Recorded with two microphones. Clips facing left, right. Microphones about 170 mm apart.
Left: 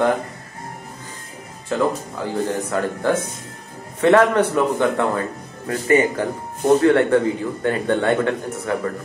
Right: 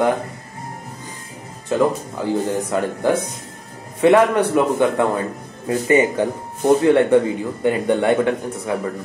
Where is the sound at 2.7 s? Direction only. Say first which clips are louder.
Right 2 dB; 15° right (ahead or behind).